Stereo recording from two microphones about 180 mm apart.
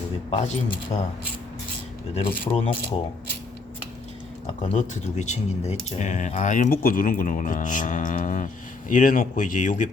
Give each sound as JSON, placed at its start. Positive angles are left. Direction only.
{"t": 0.3, "sound": "speech", "side_deg": 30}
{"t": 2.1, "sound": "speech", "side_deg": 35}
{"t": 4.6, "sound": "speech", "side_deg": 40}